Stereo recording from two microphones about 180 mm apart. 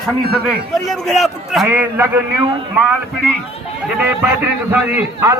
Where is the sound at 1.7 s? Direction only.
15° right (ahead or behind).